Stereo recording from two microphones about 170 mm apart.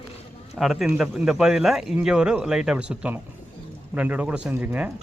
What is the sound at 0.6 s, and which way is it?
Speech, centre (ahead or behind).